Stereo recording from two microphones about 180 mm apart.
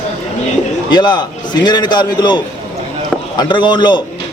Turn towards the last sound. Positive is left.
turn(degrees=25)  # may be behind; listen again after turning